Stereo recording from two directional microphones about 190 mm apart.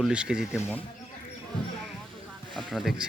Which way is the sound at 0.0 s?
5° right (ahead or behind).